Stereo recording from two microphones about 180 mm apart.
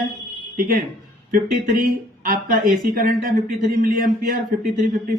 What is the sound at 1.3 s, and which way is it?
Speech, 50° right (ahead or behind).